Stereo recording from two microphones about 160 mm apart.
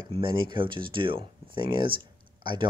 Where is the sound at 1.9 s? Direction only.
30° right (ahead or behind).